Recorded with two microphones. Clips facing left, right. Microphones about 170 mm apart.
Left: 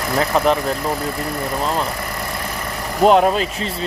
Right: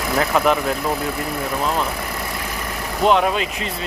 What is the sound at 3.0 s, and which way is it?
Speech, 40° left (ahead or behind).